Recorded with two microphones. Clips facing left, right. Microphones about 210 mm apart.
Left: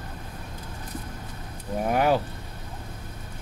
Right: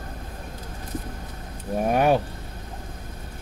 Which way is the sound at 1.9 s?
20° right (ahead or behind).